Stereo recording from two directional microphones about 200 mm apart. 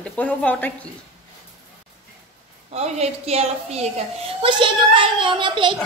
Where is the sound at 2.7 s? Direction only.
30° right (ahead or behind).